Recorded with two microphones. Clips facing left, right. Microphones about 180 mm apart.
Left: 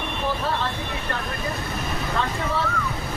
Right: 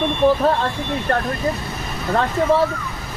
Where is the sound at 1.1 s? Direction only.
55° right (ahead or behind).